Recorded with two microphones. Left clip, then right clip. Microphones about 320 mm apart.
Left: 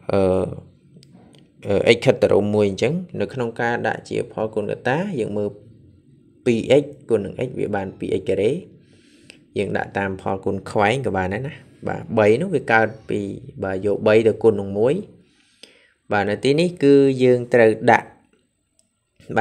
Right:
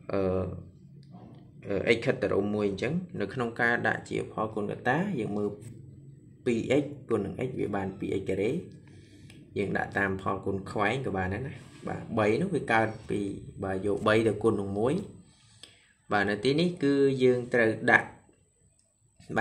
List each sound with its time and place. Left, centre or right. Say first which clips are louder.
0.0 s speech: left 11 dB; left
1.6 s speech: left 10 dB; left